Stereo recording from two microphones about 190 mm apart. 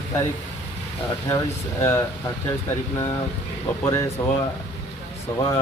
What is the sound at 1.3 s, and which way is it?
Speech, 15° left (ahead or behind).